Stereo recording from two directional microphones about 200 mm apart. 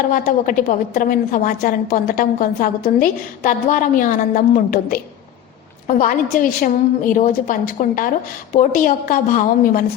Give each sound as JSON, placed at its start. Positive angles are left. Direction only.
{"t": 0.1, "sound": "a woman's voice", "side_deg": 40}